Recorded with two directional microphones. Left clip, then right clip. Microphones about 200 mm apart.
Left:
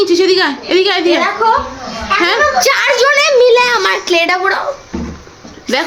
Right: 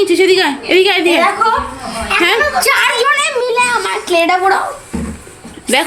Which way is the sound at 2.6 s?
40° left (ahead or behind).